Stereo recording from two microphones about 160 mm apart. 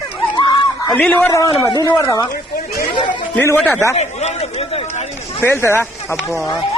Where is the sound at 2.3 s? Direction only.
75° left (ahead or behind).